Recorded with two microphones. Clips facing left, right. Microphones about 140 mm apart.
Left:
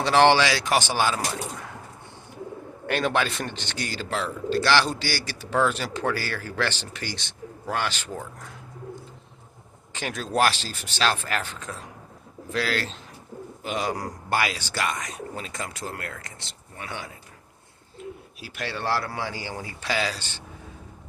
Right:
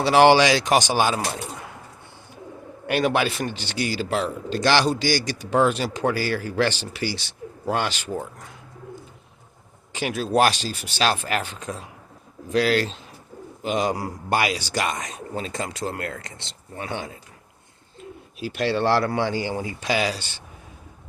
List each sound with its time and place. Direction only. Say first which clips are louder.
0.0 s a man's voice: right 3 dB; 10° right (ahead or behind)
2.8 s a man's voice: right 3 dB; 10° right (ahead or behind)
9.9 s a man's voice: right 5 dB; 10° right (ahead or behind); by 17.1 s 25° right (ahead or behind)
18.3 s a man's voice: right 11 dB; 25° right (ahead or behind)